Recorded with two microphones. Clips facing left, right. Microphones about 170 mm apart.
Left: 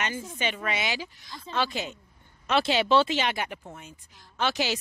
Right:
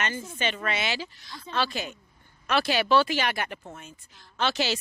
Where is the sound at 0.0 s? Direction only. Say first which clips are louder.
Right 1 dB; 15° left (ahead or behind).